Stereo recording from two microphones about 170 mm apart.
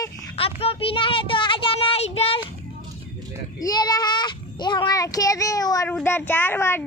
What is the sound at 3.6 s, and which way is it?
Child singing, 25° left (ahead or behind).